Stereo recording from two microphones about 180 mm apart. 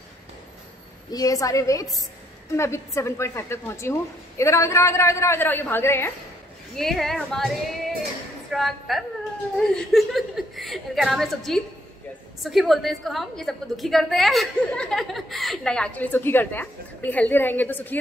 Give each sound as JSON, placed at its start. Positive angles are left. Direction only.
{"t": 1.1, "sound": "a woman's voice", "side_deg": 20}
{"t": 6.7, "sound": "a woman's voice", "side_deg": 0}